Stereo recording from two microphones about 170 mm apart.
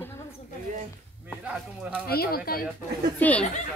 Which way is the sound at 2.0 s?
65° left (ahead or behind).